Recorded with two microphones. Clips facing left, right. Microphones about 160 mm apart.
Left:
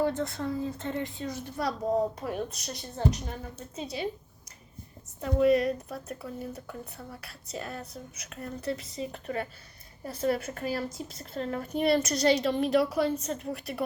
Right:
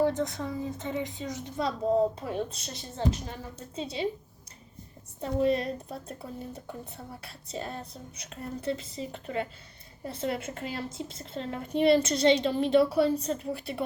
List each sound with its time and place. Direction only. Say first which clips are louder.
0.0 s a woman's voice: right 1 dB; 15° right (ahead or behind)
5.2 s a woman's voice: left 3 dB; 30° right (ahead or behind)